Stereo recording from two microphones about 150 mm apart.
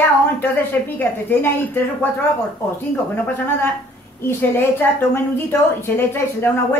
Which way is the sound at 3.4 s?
15° left (ahead or behind).